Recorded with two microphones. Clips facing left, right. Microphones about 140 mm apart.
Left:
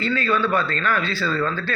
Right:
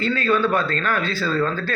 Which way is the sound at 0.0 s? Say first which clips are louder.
Right 2 dB; 45° right (ahead or behind).